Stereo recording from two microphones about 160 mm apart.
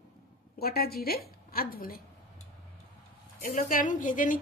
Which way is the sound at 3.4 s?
60° left (ahead or behind).